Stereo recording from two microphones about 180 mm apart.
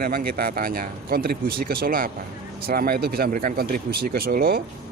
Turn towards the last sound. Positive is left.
turn(degrees=-55)  # may be behind; listen again after turning